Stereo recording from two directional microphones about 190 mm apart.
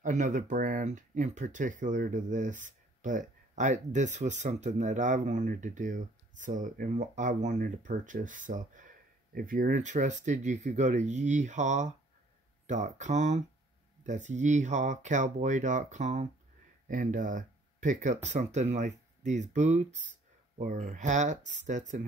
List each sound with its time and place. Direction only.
0.0 s speech: 40° right (ahead or behind)